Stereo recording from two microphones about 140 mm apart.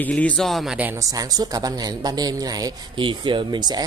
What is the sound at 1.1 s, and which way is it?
A man's voice, 25° right (ahead or behind).